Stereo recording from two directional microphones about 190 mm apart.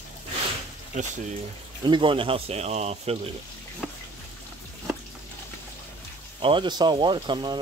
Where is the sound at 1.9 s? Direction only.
25° right (ahead or behind).